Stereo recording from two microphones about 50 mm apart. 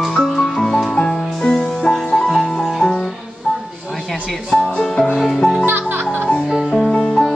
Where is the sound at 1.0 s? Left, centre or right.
Centre.